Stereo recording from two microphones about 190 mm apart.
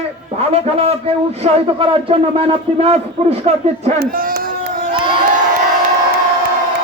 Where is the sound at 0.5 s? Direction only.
30° right (ahead or behind).